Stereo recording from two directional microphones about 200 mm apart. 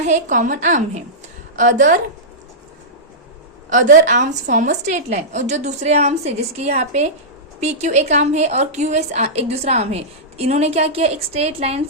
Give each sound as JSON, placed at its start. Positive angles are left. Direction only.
{"t": 0.0, "sound": "a woman's voice", "side_deg": -40}
{"t": 3.7, "sound": "a woman's voice", "side_deg": -40}